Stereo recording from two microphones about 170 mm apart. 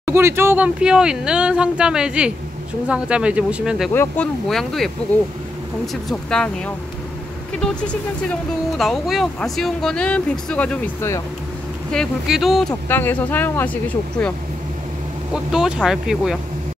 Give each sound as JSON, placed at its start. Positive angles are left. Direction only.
{"t": 0.0, "sound": "speech", "side_deg": -15}
{"t": 3.9, "sound": "speech", "side_deg": 10}
{"t": 4.5, "sound": "speech", "side_deg": 0}
{"t": 6.0, "sound": "speech", "side_deg": 5}
{"t": 11.0, "sound": "speech", "side_deg": 15}
{"t": 11.9, "sound": "speech", "side_deg": 0}
{"t": 12.8, "sound": "speech", "side_deg": 10}
{"t": 15.3, "sound": "speech", "side_deg": -5}